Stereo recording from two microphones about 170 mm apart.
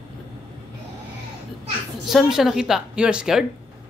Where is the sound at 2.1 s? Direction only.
Centre (ahead or behind).